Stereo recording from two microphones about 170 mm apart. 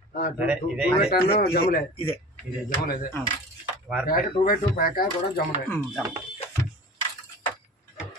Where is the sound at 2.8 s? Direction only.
60° left (ahead or behind).